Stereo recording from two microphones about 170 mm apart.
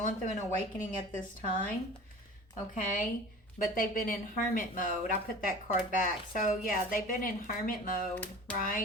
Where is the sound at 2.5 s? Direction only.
50° left (ahead or behind).